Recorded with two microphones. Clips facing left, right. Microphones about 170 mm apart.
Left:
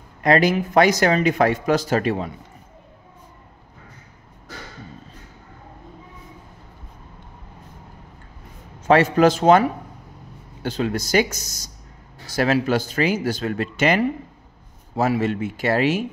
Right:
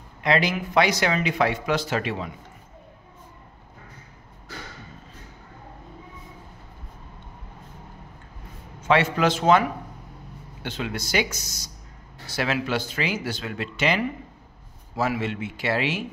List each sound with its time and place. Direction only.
0.2 s speech: 45° left (ahead or behind)
8.8 s speech: 40° left (ahead or behind)